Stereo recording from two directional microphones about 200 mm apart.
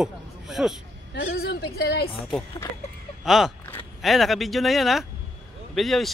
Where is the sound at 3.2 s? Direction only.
Centre (ahead or behind).